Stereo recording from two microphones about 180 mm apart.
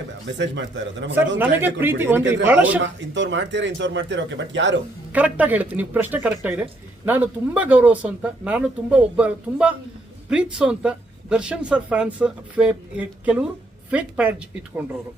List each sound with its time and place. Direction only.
0.3 s speech: 85° right
1.4 s speech: 10° right (ahead or behind)
2.7 s speech: 90° right
5.1 s speech: 10° right (ahead or behind)